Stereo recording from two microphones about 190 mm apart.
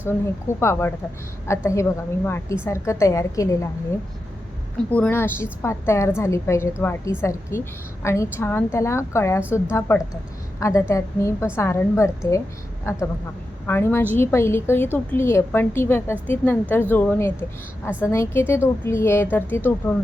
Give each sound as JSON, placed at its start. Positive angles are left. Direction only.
{"t": 0.6, "sound": "a woman's voice", "side_deg": 15}
{"t": 4.9, "sound": "a woman's voice", "side_deg": 10}